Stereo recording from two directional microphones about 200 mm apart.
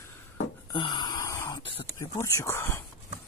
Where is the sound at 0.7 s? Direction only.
25° left (ahead or behind).